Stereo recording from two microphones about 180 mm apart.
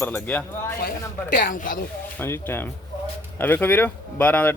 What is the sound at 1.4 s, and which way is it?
Speech, 50° left (ahead or behind).